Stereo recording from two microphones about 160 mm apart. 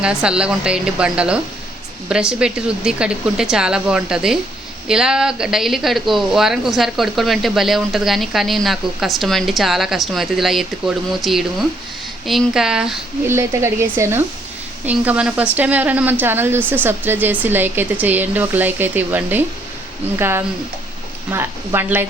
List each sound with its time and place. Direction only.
0.0 s speech: 5° right (ahead or behind)
13.2 s speech: 15° right (ahead or behind)